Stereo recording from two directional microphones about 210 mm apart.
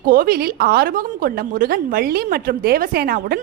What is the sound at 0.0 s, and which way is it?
A woman's voice, 40° right (ahead or behind).